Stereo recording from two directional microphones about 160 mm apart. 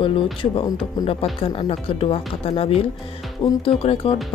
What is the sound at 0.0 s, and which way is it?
Speech, 35° left (ahead or behind).